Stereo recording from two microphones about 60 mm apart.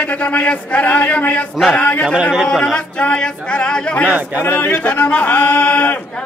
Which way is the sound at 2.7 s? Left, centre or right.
Centre.